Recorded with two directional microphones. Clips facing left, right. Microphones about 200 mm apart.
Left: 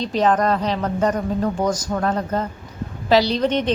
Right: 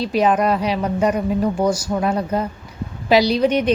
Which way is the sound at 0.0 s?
10° right (ahead or behind).